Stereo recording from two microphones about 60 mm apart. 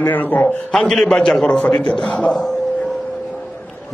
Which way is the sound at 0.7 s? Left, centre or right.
Centre.